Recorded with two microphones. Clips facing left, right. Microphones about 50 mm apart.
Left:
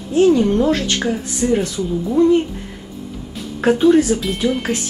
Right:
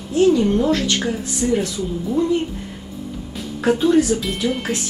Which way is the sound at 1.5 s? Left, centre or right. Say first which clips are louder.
Left 3 dB; centre.